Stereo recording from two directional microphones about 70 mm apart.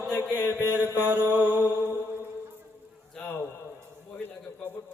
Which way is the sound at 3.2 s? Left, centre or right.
Centre.